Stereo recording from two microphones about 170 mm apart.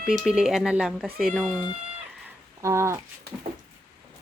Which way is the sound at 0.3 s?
5° right (ahead or behind).